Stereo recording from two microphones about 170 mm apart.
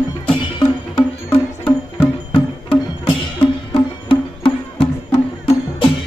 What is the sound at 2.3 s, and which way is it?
Music, 30° left (ahead or behind).